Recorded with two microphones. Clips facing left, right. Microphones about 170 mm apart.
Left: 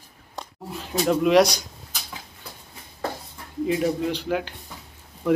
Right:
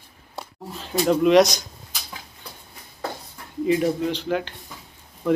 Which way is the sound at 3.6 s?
Centre (ahead or behind).